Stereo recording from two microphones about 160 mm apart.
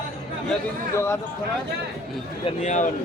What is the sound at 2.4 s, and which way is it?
Speech, 45° left (ahead or behind).